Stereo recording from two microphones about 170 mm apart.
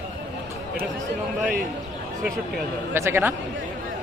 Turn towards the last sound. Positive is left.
turn(degrees=-15)  # may be behind; listen again after turning